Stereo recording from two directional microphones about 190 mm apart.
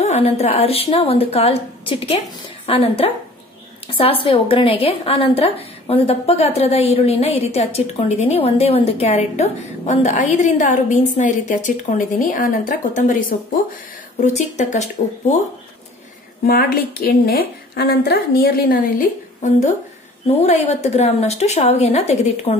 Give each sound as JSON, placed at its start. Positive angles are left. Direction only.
{"t": 0.0, "sound": "a woman's voice", "side_deg": 35}
{"t": 14.2, "sound": "a woman's voice", "side_deg": 40}
{"t": 16.4, "sound": "a woman's voice", "side_deg": 50}